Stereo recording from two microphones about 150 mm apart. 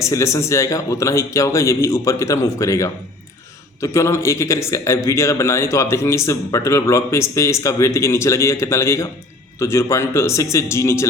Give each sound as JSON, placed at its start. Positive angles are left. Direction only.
{"t": 0.0, "sound": "a man's voice", "side_deg": 20}